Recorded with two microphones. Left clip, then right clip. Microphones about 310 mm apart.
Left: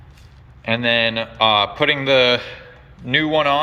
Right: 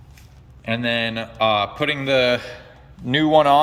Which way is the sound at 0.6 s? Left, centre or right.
Centre.